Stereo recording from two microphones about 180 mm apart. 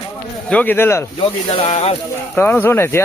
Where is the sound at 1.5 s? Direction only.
35° left (ahead or behind).